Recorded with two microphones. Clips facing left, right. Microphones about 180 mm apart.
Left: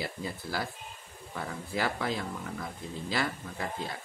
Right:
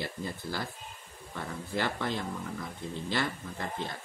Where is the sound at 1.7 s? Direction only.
5° left (ahead or behind).